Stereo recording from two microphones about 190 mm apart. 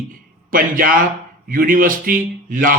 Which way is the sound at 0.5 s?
45° right (ahead or behind).